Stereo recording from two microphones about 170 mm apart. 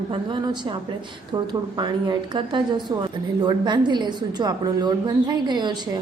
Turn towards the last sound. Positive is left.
turn(degrees=-25)  # may be behind; listen again after turning